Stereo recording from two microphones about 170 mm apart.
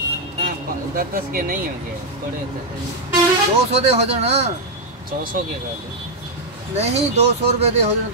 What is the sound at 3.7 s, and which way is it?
Speech, 40° right (ahead or behind).